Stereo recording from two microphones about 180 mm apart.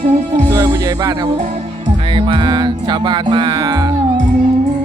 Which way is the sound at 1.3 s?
40° right (ahead or behind).